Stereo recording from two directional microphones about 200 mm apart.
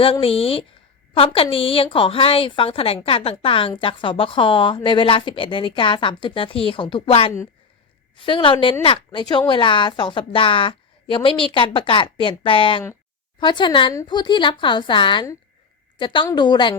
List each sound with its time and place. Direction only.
0.0 s a woman's voice: 30° left (ahead or behind)